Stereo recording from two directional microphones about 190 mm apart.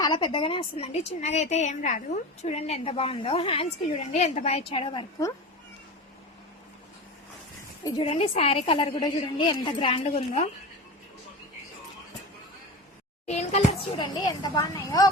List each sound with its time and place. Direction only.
0.0 s a woman's voice: 25° left (ahead or behind)
7.9 s a woman's voice: 25° left (ahead or behind)
13.2 s a woman's voice: 35° left (ahead or behind); by 15.1 s 20° left (ahead or behind)